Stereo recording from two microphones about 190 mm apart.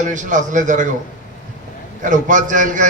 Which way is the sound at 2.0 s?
40° right (ahead or behind).